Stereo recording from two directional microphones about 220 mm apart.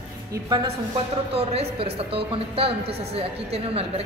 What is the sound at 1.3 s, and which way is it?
A woman's voice, 30° right (ahead or behind).